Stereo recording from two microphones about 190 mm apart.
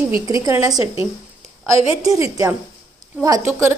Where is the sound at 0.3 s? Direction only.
15° right (ahead or behind).